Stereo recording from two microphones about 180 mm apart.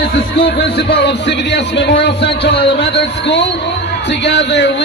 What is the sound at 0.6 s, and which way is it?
Music, 75° left (ahead or behind).